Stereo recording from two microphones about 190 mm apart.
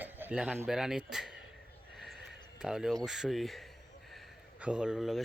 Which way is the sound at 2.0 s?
Centre (ahead or behind).